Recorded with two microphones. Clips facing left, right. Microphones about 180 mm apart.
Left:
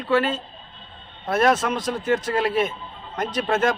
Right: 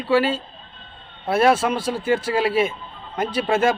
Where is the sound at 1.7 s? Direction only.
30° right (ahead or behind).